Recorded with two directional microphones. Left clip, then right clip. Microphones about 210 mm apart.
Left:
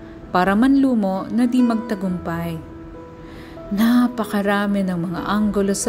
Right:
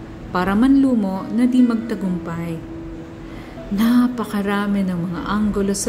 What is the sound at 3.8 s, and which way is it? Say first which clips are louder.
A woman's voice: even; 35° left (ahead or behind).